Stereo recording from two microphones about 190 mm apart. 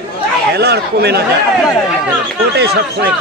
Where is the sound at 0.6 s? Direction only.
60° right (ahead or behind).